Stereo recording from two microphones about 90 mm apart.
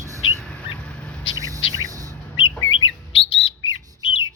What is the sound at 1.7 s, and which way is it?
Music, 40° right (ahead or behind).